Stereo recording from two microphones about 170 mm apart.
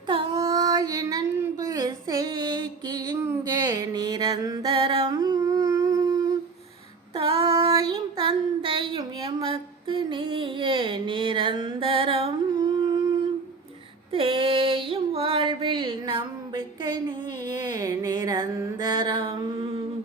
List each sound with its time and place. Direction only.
0.1 s child singing: 25° right (ahead or behind)
4.7 s humming: 35° right (ahead or behind)
7.2 s child singing: 30° right (ahead or behind)
14.1 s female singing: 30° right (ahead or behind)
19.5 s mantra: 30° right (ahead or behind)